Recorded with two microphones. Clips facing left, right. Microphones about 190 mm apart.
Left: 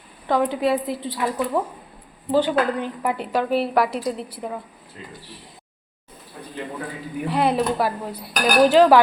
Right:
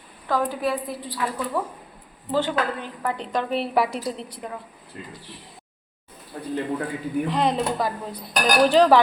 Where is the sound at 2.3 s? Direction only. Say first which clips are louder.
Left 4 dB; 15° left (ahead or behind).